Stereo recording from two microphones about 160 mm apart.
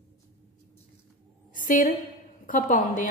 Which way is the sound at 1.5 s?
55° left (ahead or behind).